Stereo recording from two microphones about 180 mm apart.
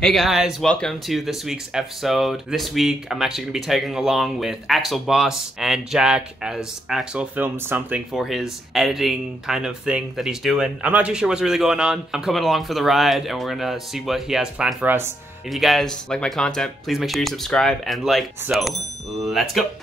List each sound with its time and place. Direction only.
0.0 s speech: centre (ahead or behind)
15.5 s speech: centre (ahead or behind)